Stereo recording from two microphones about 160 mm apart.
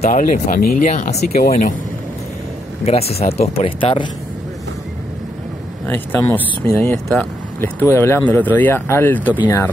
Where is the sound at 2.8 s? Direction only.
40° left (ahead or behind).